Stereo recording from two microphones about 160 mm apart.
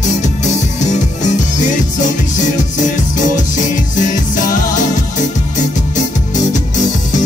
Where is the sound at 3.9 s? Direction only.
55° left (ahead or behind).